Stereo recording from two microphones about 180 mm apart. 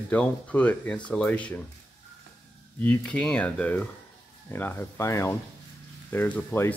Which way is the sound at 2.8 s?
10° left (ahead or behind).